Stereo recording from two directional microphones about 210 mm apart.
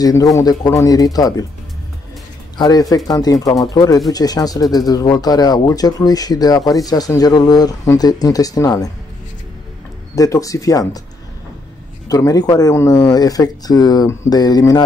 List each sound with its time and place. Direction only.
0.0 s speech: 15° left (ahead or behind)
2.5 s speech: 20° left (ahead or behind)
10.1 s speech: 15° left (ahead or behind)
12.1 s speech: 15° left (ahead or behind)